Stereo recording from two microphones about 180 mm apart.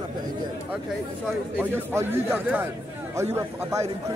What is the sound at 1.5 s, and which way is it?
A man's voice, 10° right (ahead or behind).